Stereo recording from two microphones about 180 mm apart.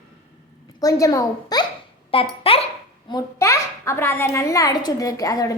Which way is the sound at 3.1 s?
20° left (ahead or behind).